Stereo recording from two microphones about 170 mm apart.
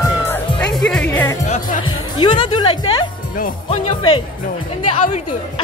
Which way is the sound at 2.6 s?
30° left (ahead or behind).